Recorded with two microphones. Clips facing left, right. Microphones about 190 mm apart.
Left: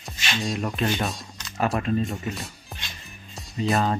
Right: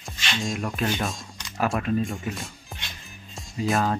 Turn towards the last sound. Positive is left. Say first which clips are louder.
# left 1 dB
turn(degrees=0)  # may be behind; listen again after turning